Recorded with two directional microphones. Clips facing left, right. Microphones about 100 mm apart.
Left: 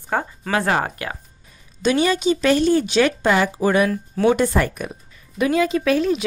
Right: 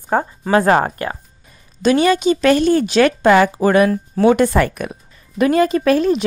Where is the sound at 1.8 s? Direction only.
55° right (ahead or behind).